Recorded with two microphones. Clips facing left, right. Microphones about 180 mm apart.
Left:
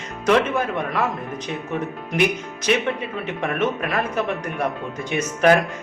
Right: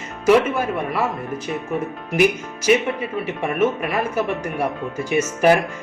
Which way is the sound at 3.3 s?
10° right (ahead or behind).